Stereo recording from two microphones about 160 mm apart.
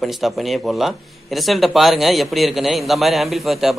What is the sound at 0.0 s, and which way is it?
Speech, centre (ahead or behind).